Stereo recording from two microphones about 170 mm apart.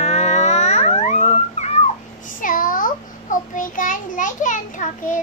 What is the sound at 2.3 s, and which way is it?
Child singing, 55° left (ahead or behind).